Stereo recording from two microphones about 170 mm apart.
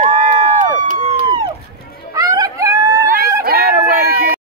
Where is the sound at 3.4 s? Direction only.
65° right (ahead or behind).